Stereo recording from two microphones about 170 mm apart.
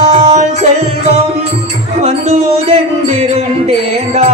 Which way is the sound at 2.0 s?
40° right (ahead or behind).